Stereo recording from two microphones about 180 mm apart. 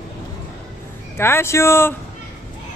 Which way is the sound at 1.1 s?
15° left (ahead or behind).